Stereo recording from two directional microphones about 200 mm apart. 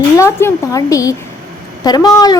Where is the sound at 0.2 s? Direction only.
15° left (ahead or behind).